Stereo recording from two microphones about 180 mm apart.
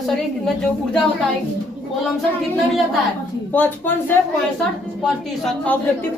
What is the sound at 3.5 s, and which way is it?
Speech, 10° left (ahead or behind).